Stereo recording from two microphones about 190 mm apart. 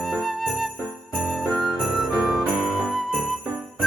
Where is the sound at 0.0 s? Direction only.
Centre (ahead or behind).